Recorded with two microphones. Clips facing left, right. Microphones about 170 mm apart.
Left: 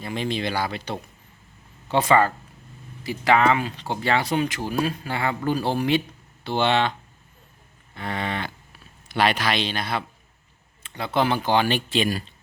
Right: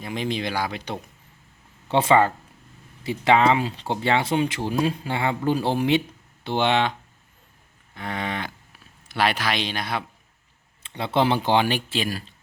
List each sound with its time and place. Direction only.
0.0 s speech: 15° right (ahead or behind)
7.9 s speech: 10° right (ahead or behind)
10.8 s speech: 25° right (ahead or behind)
11.7 s speech: 5° right (ahead or behind)